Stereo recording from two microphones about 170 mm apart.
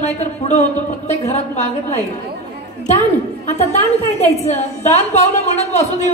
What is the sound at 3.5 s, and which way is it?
A man's voice, 40° left (ahead or behind).